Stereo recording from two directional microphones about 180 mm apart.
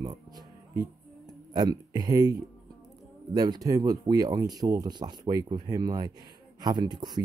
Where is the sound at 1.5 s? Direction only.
20° right (ahead or behind).